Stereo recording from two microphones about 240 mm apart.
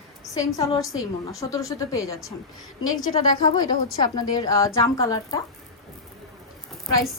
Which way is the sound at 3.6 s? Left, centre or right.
Centre.